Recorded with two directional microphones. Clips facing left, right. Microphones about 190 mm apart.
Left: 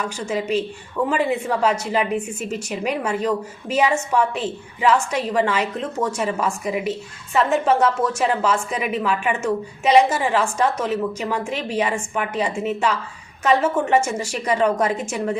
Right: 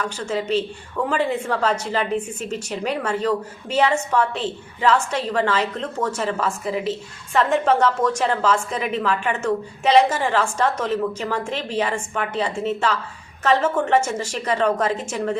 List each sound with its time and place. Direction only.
0.0 s a woman's voice: 10° left (ahead or behind)